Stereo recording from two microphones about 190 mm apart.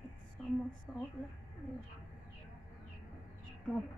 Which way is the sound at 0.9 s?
5° left (ahead or behind).